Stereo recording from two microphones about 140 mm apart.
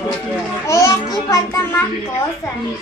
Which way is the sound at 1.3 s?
15° left (ahead or behind).